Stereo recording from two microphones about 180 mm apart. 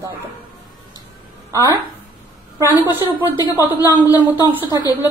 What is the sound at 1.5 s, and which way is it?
Speech, 20° right (ahead or behind).